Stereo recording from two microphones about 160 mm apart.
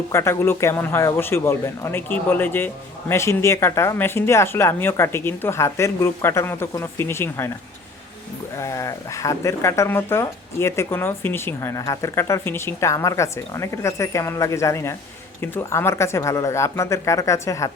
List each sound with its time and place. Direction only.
0.1 s speech: 15° left (ahead or behind)
8.5 s speech: 20° left (ahead or behind)